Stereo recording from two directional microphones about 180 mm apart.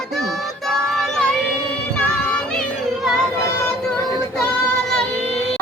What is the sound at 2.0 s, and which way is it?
Music, 5° left (ahead or behind).